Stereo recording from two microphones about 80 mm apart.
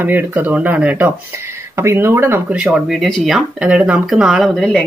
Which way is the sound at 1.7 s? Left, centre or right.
Right.